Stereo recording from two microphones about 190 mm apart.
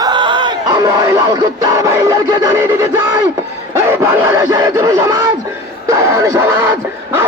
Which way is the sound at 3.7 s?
15° right (ahead or behind).